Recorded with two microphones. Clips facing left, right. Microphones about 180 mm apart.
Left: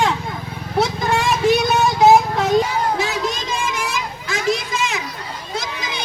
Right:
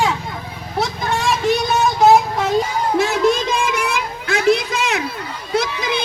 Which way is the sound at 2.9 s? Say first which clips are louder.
Right 7 dB; 55° right (ahead or behind).